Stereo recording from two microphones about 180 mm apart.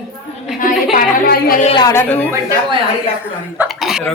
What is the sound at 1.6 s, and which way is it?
Speech, 25° left (ahead or behind).